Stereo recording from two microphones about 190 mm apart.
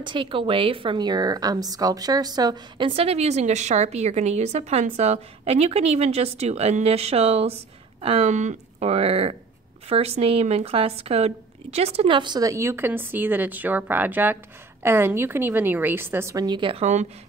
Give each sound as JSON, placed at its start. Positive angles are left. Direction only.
{"t": 0.0, "sound": "a woman's voice", "side_deg": -25}